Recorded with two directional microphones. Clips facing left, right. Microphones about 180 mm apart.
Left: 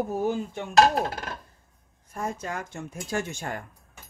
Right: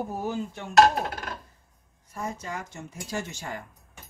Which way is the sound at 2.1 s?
55° left (ahead or behind).